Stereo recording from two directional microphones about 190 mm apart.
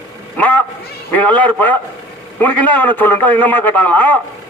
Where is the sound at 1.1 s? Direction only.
10° left (ahead or behind).